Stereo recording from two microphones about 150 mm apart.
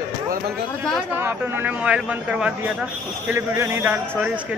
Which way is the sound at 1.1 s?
15° right (ahead or behind).